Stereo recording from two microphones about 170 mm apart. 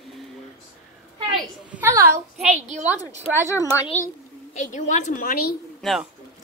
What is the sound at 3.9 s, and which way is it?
A child's voice, 40° left (ahead or behind).